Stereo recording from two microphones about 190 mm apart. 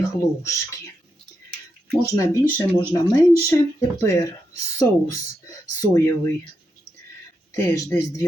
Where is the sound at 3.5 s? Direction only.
15° left (ahead or behind).